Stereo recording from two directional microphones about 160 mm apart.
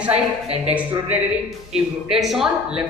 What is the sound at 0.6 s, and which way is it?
Speech, 10° right (ahead or behind).